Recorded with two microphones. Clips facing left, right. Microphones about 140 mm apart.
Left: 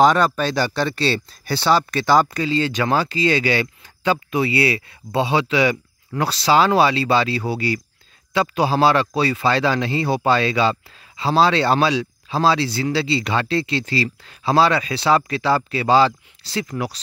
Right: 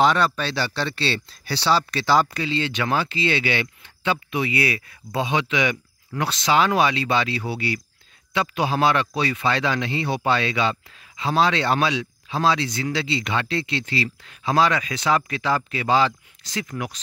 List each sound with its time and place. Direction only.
0.0 s a man's voice: 45° left (ahead or behind)